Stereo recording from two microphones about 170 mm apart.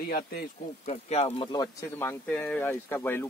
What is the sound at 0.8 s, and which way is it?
Speech, 35° left (ahead or behind).